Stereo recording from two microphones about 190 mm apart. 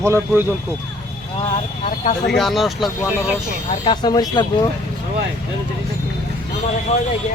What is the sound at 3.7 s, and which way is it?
Speech, 25° left (ahead or behind).